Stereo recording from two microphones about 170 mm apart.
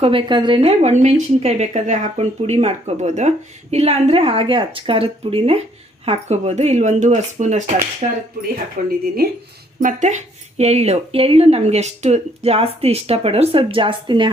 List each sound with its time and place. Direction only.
0.0 s a woman's voice: 30° right (ahead or behind); by 9.3 s 65° right (ahead or behind)
9.8 s speech: 45° right (ahead or behind); by 14.3 s 30° right (ahead or behind)